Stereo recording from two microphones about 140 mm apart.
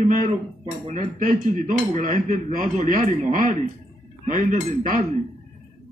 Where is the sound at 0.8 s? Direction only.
65° right (ahead or behind).